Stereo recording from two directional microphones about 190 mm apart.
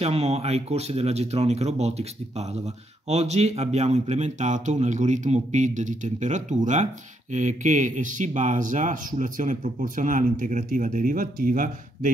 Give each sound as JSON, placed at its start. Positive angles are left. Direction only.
{"t": 0.0, "sound": "speech", "side_deg": -35}